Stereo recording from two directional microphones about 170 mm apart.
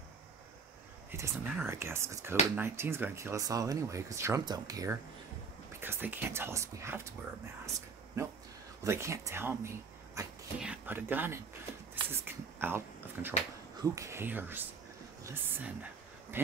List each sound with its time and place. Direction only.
1.1 s speech: 15° right (ahead or behind)
8.8 s a woman's voice: 15° right (ahead or behind)